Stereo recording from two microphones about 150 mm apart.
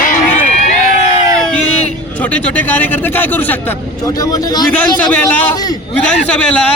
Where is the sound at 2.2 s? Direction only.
10° left (ahead or behind).